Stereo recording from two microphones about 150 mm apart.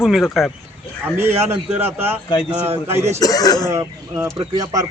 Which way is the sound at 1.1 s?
15° right (ahead or behind).